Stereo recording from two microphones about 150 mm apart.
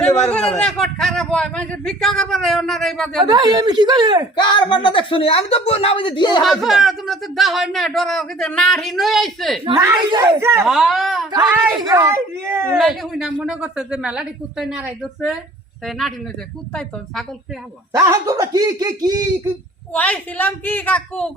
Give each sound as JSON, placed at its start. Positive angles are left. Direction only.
{"t": 0.2, "sound": "speech", "side_deg": 5}
{"t": 3.2, "sound": "speech", "side_deg": -25}
{"t": 4.4, "sound": "speech", "side_deg": 30}
{"t": 6.4, "sound": "speech", "side_deg": 0}
{"t": 9.7, "sound": "speech", "side_deg": -20}
{"t": 10.7, "sound": "speech", "side_deg": 0}
{"t": 11.8, "sound": "speech", "side_deg": -20}
{"t": 12.7, "sound": "speech", "side_deg": 0}
{"t": 17.9, "sound": "speech", "side_deg": -20}
{"t": 19.9, "sound": "a woman's voice", "side_deg": 10}